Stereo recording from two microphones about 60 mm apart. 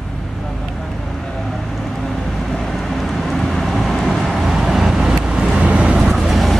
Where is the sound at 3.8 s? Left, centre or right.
Centre.